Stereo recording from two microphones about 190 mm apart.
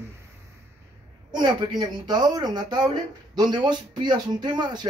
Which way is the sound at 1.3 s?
25° right (ahead or behind).